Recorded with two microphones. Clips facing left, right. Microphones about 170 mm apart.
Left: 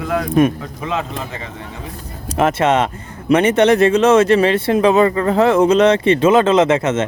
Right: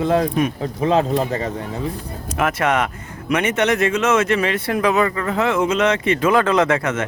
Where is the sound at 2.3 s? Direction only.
25° left (ahead or behind).